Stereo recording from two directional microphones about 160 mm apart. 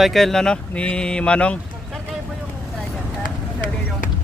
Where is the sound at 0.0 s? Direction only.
Centre (ahead or behind).